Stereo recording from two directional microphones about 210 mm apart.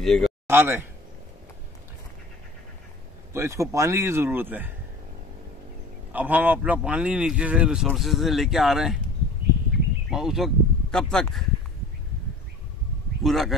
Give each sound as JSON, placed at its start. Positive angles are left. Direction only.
{"t": 0.0, "sound": "speech", "side_deg": 0}
{"t": 0.5, "sound": "speech", "side_deg": -10}
{"t": 3.3, "sound": "speech", "side_deg": -15}
{"t": 6.1, "sound": "speech", "side_deg": -10}
{"t": 10.0, "sound": "speech", "side_deg": 0}
{"t": 13.2, "sound": "speech", "side_deg": 0}